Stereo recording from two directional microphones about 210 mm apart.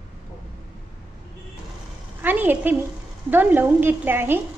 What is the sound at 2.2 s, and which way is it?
A woman's voice, 10° right (ahead or behind).